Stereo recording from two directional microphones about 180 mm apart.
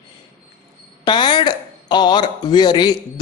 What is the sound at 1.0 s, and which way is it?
Speech, 25° left (ahead or behind).